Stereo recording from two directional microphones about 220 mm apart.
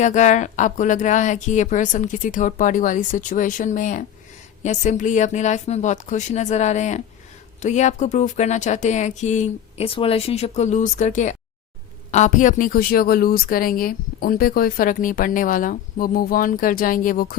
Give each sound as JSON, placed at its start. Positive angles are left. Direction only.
{"t": 0.0, "sound": "a woman's voice", "side_deg": 35}